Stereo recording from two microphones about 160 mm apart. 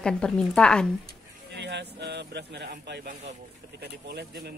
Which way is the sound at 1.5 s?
90° right.